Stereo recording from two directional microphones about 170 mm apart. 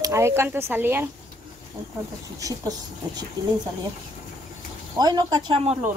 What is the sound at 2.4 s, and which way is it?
Speech, 20° right (ahead or behind).